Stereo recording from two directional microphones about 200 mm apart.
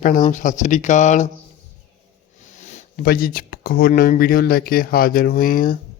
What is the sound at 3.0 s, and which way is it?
Speech, 50° left (ahead or behind).